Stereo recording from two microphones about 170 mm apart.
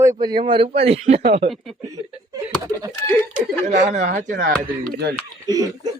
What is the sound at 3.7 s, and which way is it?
Speech, 45° right (ahead or behind).